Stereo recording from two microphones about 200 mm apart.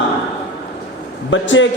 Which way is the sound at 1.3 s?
70° left (ahead or behind).